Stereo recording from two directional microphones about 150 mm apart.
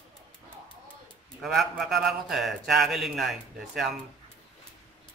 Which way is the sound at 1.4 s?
Centre (ahead or behind).